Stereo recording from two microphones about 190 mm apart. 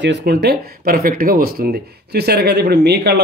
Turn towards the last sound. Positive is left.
turn(degrees=-60)  # may be behind; listen again after turning